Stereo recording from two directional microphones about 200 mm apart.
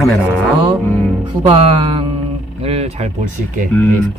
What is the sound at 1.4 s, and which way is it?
Music, 25° right (ahead or behind).